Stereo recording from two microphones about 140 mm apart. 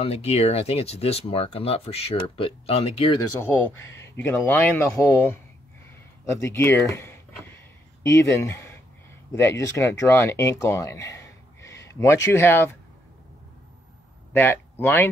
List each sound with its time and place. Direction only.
0.0 s speech: 45° left (ahead or behind)
3.7 s speech: 20° left (ahead or behind)
14.3 s speech: 15° left (ahead or behind)